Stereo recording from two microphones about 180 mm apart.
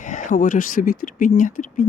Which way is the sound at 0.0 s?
45° left (ahead or behind).